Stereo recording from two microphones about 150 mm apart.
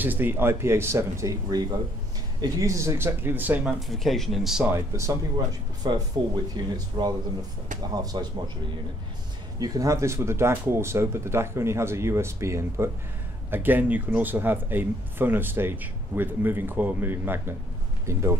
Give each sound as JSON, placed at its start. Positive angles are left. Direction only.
{"t": 0.0, "sound": "speech", "side_deg": -15}
{"t": 3.9, "sound": "speech", "side_deg": 0}
{"t": 4.6, "sound": "speech", "side_deg": -20}
{"t": 9.6, "sound": "speech", "side_deg": -25}